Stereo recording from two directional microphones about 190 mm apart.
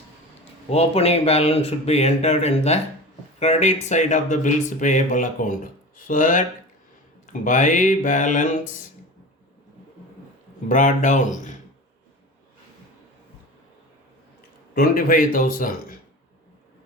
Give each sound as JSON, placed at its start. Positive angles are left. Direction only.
{"t": 0.7, "sound": "speech", "side_deg": 35}
{"t": 7.4, "sound": "speech", "side_deg": 45}
{"t": 10.7, "sound": "speech", "side_deg": 40}
{"t": 14.8, "sound": "speech", "side_deg": 50}